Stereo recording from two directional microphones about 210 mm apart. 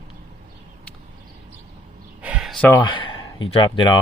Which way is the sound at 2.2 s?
5° right (ahead or behind).